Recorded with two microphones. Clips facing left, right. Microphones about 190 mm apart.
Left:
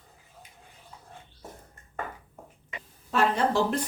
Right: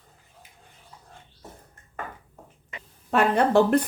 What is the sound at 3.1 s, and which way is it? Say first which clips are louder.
Speech: right 5 dB; 60° right (ahead or behind).